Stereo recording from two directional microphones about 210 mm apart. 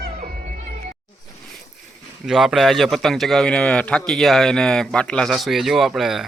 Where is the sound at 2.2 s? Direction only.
Centre (ahead or behind).